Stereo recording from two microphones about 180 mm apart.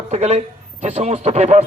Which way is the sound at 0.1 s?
40° right (ahead or behind).